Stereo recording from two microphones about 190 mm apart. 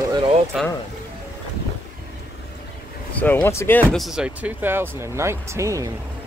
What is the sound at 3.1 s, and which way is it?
Speech, 10° left (ahead or behind).